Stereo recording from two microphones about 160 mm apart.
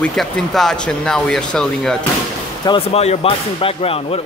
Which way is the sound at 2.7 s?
40° left (ahead or behind).